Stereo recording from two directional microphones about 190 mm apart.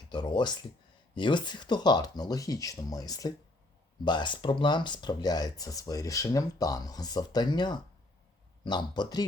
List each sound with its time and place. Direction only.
0.1 s speech: 25° left (ahead or behind)